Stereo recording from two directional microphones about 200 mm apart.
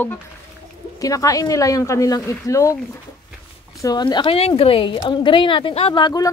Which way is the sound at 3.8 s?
20° left (ahead or behind).